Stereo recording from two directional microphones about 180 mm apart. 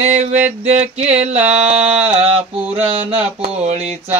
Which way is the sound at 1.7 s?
5° right (ahead or behind).